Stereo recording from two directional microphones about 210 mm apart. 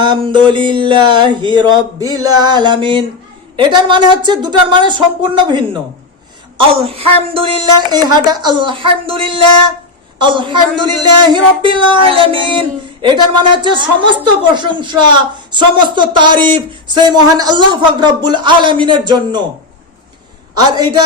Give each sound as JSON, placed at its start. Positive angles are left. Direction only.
{"t": 0.0, "sound": "speech", "side_deg": -20}
{"t": 6.6, "sound": "speech", "side_deg": -25}
{"t": 11.6, "sound": "speech", "side_deg": -25}
{"t": 20.6, "sound": "speech", "side_deg": -20}